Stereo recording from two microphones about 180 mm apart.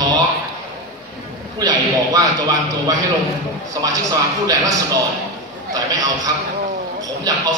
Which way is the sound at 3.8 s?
20° right (ahead or behind).